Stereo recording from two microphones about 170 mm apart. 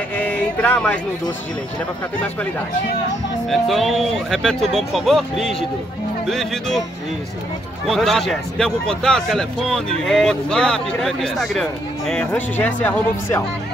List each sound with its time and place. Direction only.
0.2 s a sound: 10° left (ahead or behind)
3.4 s speech: centre (ahead or behind)
7.8 s speech: centre (ahead or behind)